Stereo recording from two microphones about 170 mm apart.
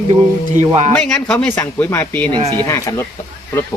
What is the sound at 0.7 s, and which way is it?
Speech, 35° right (ahead or behind).